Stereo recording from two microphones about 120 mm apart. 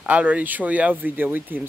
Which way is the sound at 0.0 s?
10° right (ahead or behind).